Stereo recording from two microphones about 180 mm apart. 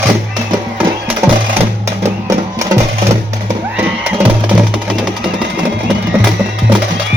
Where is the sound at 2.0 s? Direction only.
15° right (ahead or behind).